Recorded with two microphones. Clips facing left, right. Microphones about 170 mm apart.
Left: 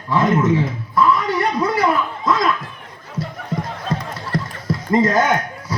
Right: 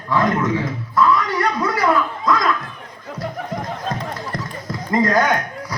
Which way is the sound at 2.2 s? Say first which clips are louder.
Left 1 dB; 25° left (ahead or behind).